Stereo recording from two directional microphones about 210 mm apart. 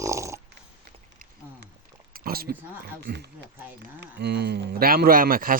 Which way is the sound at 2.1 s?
45° right (ahead or behind).